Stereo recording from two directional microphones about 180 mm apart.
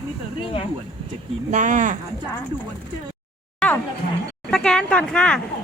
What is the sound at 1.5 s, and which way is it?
Speech, 45° right (ahead or behind).